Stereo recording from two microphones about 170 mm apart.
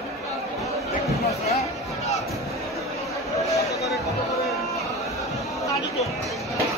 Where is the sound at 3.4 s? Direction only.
20° left (ahead or behind).